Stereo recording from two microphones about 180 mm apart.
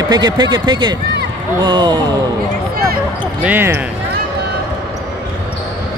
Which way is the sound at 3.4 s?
10° right (ahead or behind).